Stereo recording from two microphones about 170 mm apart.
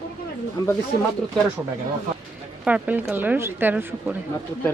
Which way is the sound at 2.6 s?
10° right (ahead or behind).